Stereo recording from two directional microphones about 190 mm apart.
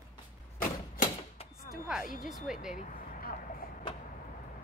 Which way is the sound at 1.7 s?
5° right (ahead or behind).